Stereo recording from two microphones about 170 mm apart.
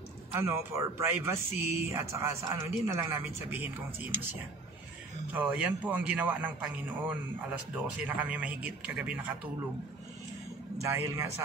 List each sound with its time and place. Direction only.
0.3 s speech: 15° right (ahead or behind)
5.3 s speech: 10° right (ahead or behind)
10.8 s speech: 15° right (ahead or behind)